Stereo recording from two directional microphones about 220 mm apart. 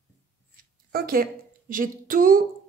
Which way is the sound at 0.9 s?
40° right (ahead or behind).